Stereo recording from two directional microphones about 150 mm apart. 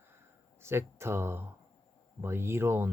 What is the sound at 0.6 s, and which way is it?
Speech, 15° right (ahead or behind).